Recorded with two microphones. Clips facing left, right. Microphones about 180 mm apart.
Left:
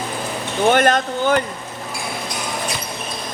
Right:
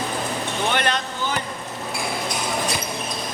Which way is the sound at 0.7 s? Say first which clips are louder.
Left 11 dB; 45° left (ahead or behind).